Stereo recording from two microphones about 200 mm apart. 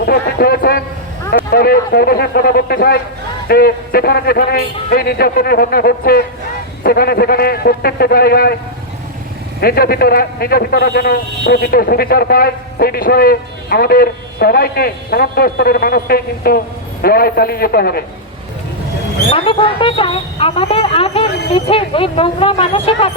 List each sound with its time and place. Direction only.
0.0 s a man's voice: 50° left (ahead or behind)
9.6 s a man's voice: 50° left (ahead or behind)
19.3 s a woman's voice: 25° left (ahead or behind)